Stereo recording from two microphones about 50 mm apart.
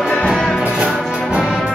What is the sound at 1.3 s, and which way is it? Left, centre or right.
Music, centre.